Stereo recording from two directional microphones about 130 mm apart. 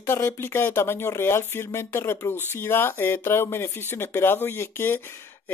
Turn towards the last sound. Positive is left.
turn(degrees=15)  # may be behind; listen again after turning